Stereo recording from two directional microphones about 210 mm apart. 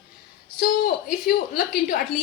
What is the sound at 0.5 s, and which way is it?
A woman's voice, 45° left (ahead or behind).